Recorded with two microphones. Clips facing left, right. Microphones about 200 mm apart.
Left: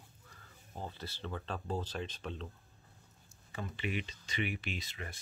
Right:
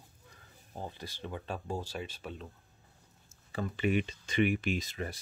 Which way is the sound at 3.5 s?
40° right (ahead or behind).